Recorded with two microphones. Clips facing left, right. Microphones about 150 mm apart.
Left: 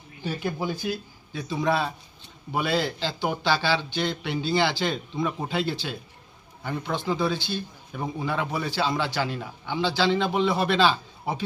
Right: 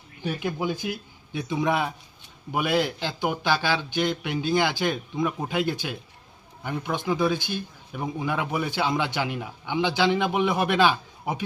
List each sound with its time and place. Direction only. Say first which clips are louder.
0.2 s speech: right 1 dB; 15° right (ahead or behind)